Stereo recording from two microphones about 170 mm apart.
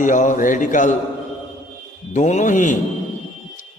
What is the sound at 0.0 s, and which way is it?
Speech, 50° left (ahead or behind).